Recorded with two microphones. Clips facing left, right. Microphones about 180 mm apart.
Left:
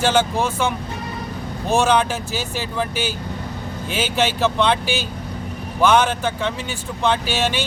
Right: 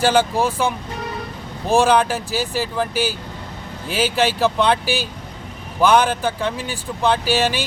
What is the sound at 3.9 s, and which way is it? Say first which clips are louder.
Speech: right 2 dB; 5° right (ahead or behind).